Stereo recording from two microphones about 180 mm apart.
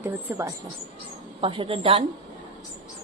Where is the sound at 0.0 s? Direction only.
10° right (ahead or behind).